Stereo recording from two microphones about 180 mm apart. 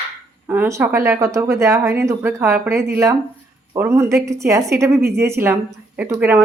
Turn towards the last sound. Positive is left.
turn(degrees=-10)  # may be behind; listen again after turning